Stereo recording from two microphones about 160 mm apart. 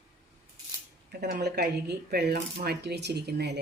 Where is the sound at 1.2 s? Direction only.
90° right.